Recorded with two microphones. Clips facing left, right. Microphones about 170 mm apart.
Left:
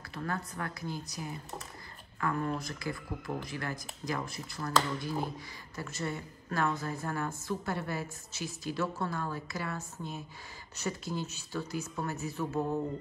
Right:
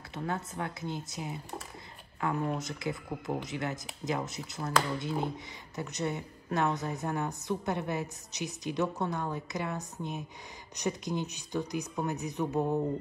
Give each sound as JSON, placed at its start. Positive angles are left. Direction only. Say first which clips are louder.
{"t": 0.1, "sound": "a woman's voice", "louder": "right 2 dB", "side_deg": -20}